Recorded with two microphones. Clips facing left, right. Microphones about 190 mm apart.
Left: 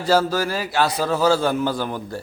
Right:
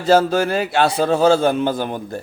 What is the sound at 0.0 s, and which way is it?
A man's voice, 25° right (ahead or behind).